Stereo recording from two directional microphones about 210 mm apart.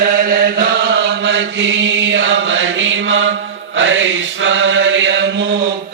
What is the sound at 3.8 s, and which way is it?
Mantra, 65° right (ahead or behind).